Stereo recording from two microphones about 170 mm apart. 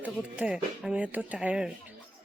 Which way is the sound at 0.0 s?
10° right (ahead or behind).